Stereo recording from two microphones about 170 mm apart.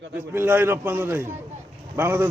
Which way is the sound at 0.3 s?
10° right (ahead or behind).